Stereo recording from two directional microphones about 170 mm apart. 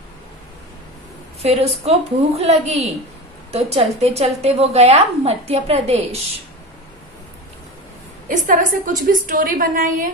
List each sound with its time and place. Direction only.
1.4 s a woman's voice: 40° right (ahead or behind)
8.3 s a woman's voice: 50° right (ahead or behind)